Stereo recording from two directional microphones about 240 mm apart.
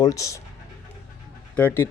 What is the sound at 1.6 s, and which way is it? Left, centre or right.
Speech, centre.